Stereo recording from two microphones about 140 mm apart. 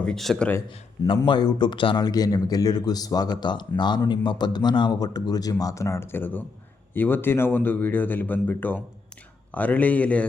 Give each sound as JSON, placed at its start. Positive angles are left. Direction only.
{"t": 0.0, "sound": "speech", "side_deg": 5}
{"t": 1.0, "sound": "speech", "side_deg": 35}